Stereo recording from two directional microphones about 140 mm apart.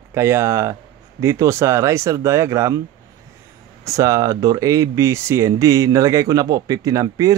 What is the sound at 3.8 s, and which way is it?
Speech, 25° right (ahead or behind).